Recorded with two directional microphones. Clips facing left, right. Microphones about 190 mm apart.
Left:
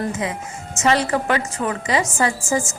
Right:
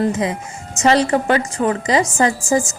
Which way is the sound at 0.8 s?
35° right (ahead or behind).